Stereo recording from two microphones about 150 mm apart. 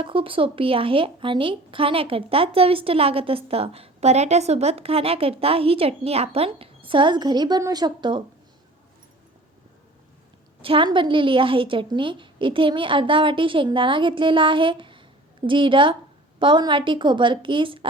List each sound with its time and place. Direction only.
0.0 s speech: 35° right (ahead or behind)
10.6 s speech: 35° right (ahead or behind)